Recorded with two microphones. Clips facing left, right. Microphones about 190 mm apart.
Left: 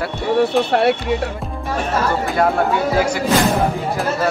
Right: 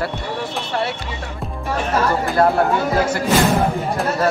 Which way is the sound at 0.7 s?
65° left (ahead or behind).